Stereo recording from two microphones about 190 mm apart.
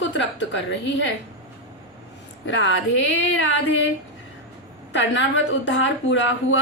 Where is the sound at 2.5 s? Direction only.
75° left (ahead or behind).